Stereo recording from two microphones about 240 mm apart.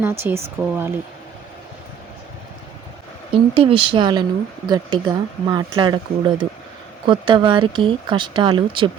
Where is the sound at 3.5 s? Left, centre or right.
Right.